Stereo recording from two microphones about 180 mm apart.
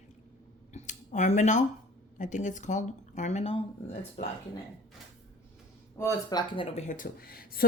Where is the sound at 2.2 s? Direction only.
45° left (ahead or behind).